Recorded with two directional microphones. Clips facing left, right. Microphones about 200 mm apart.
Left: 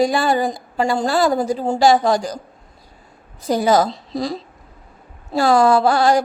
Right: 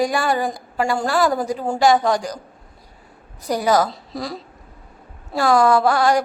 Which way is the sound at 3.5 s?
25° left (ahead or behind).